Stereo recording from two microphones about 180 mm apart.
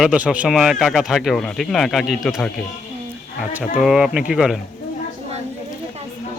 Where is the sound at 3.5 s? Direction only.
5° right (ahead or behind).